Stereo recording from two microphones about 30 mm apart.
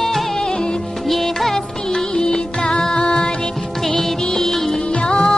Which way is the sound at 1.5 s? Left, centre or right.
Centre.